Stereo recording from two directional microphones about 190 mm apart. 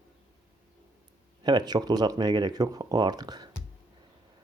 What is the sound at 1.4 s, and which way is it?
Speech, 20° right (ahead or behind).